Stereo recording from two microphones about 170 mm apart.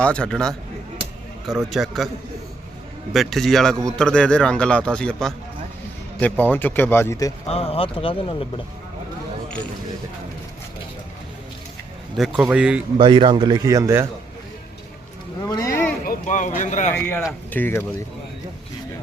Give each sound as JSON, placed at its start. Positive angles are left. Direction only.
{"t": 0.0, "sound": "a man's voice", "side_deg": 5}
{"t": 3.1, "sound": "a man's voice", "side_deg": 0}
{"t": 7.4, "sound": "speech", "side_deg": 35}
{"t": 12.1, "sound": "a man's voice", "side_deg": -5}
{"t": 13.0, "sound": "speech", "side_deg": -30}
{"t": 15.5, "sound": "a sound", "side_deg": 15}
{"t": 16.0, "sound": "a sound", "side_deg": 50}
{"t": 16.6, "sound": "speech", "side_deg": 45}
{"t": 16.9, "sound": "speech", "side_deg": 10}